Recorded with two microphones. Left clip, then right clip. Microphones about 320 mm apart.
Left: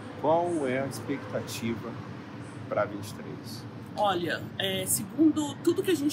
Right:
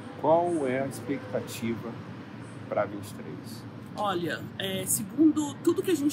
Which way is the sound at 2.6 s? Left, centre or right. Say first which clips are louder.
Even; right.